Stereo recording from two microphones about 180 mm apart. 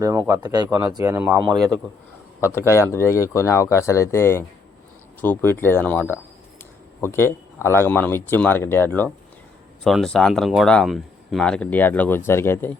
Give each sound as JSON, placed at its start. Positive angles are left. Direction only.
{"t": 0.0, "sound": "speech", "side_deg": -20}
{"t": 2.4, "sound": "a man's voice", "side_deg": 15}